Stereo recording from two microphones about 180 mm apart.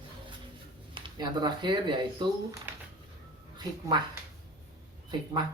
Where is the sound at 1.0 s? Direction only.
25° right (ahead or behind).